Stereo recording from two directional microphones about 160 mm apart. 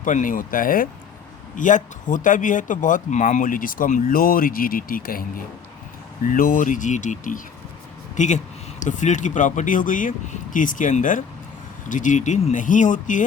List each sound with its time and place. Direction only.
0.0 s speech: 55° left (ahead or behind)
6.2 s speech: 60° left (ahead or behind)